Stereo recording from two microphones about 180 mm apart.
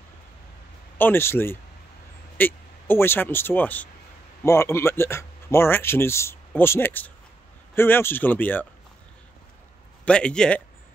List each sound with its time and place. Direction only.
0.9 s speech: 10° left (ahead or behind)
10.0 s speech: 5° left (ahead or behind)